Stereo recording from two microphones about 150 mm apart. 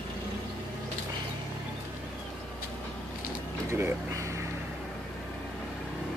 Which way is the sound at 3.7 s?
15° right (ahead or behind).